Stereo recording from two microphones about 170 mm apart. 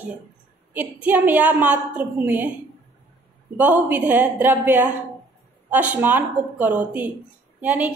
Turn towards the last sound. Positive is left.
turn(degrees=-10)  # may be behind; listen again after turning